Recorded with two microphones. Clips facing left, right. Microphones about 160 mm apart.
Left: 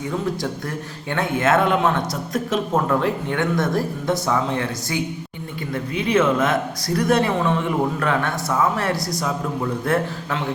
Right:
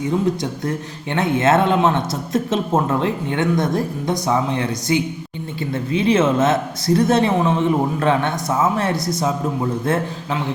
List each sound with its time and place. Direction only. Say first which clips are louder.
1.1 s speech: right 3 dB; 25° right (ahead or behind)